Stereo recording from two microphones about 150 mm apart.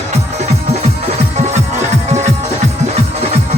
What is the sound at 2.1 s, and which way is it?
Music, 50° right (ahead or behind).